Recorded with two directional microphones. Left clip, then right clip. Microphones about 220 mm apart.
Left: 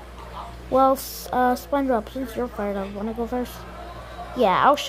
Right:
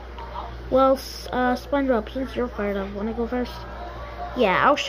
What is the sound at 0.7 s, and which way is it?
Speech, 10° left (ahead or behind).